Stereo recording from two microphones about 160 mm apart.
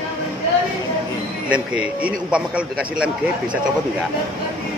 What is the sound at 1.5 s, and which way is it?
A man's voice, 10° right (ahead or behind).